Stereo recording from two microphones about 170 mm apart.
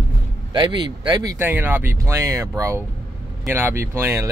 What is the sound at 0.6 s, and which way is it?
Speech, 25° right (ahead or behind).